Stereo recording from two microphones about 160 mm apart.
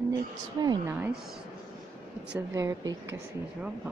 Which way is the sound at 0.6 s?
25° right (ahead or behind).